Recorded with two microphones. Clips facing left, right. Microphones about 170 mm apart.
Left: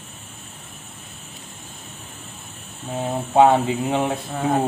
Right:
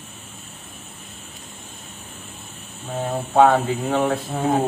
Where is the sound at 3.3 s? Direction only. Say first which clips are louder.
Left 1 dB; 15° left (ahead or behind).